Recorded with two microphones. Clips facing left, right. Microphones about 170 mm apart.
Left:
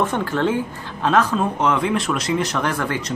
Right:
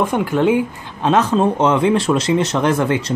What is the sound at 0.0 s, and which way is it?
Speech, 15° right (ahead or behind).